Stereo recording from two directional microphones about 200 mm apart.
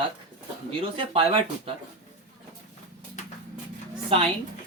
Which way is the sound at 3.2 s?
35° left (ahead or behind).